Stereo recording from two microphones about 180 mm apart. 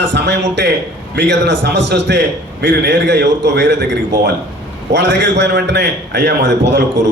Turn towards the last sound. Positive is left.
turn(degrees=-70)  # may be behind; listen again after turning